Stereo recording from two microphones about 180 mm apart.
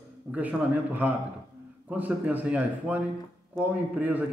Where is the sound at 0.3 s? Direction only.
10° right (ahead or behind).